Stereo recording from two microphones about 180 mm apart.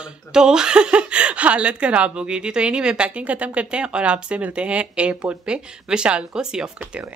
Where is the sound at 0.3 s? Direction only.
5° right (ahead or behind).